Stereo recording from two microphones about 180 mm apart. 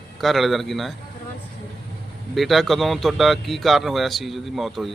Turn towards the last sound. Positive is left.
turn(degrees=0)  # may be behind; listen again after turning